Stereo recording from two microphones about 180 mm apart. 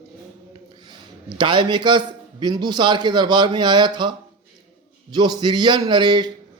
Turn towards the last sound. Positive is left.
turn(degrees=-25)  # may be behind; listen again after turning